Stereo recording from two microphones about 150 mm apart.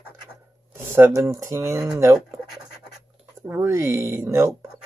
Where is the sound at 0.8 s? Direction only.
15° right (ahead or behind).